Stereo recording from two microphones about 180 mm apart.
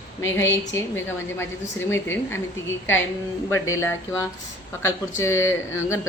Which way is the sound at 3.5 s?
15° left (ahead or behind).